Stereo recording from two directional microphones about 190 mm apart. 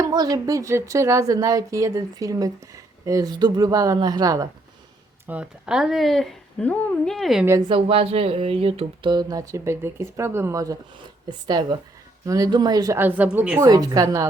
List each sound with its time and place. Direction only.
0.0 s a woman's voice: 20° right (ahead or behind)
5.3 s speech: 5° right (ahead or behind)
7.7 s a woman's voice: 30° right (ahead or behind)